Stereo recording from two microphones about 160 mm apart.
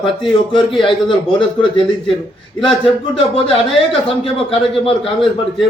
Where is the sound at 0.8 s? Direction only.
30° left (ahead or behind).